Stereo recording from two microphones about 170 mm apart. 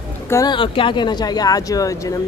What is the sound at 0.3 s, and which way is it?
Speech, 25° left (ahead or behind).